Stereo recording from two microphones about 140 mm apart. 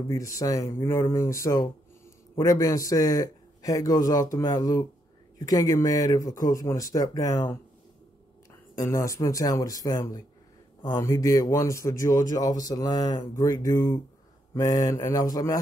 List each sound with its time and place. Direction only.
0.4 s a man's voice: 25° left (ahead or behind)
8.7 s a man's voice: 20° left (ahead or behind)